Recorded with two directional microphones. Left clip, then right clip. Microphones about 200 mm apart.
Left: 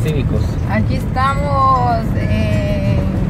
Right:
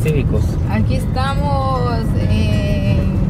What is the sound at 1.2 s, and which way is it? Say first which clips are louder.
Speech: left 6 dB; 45° right (ahead or behind).